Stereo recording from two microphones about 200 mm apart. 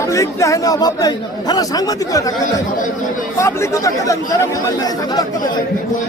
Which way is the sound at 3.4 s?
15° left (ahead or behind).